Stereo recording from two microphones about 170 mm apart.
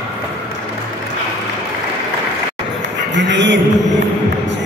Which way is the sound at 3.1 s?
90° right.